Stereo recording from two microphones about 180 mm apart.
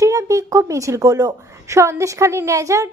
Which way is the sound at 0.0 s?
15° right (ahead or behind).